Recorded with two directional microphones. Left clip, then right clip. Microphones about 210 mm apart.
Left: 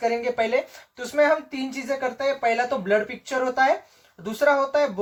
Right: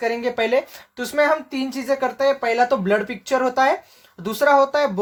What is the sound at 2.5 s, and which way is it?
Speech, 50° right (ahead or behind).